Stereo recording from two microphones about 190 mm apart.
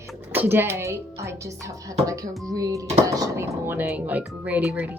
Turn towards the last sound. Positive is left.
turn(degrees=-10)  # may be behind; listen again after turning